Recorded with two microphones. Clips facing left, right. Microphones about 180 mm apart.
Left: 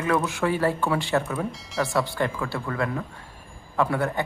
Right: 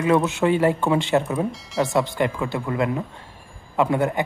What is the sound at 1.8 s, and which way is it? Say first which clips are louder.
Speech: right 4 dB; 20° right (ahead or behind).